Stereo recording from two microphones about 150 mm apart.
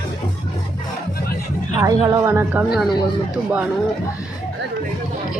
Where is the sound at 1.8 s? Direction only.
20° right (ahead or behind).